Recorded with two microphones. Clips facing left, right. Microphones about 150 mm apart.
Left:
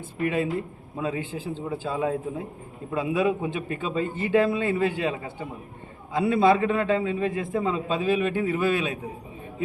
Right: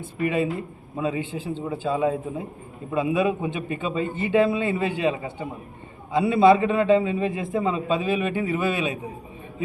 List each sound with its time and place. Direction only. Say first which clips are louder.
0.2 s a man's voice: right 1 dB; 5° right (ahead or behind)